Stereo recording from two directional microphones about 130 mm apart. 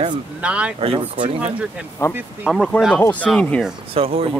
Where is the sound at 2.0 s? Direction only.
20° left (ahead or behind).